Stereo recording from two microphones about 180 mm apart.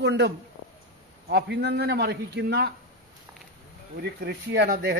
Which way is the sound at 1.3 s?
65° right (ahead or behind).